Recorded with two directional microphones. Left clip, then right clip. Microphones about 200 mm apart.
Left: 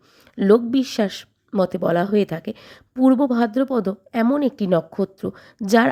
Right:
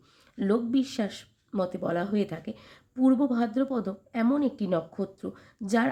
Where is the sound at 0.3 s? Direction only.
45° left (ahead or behind).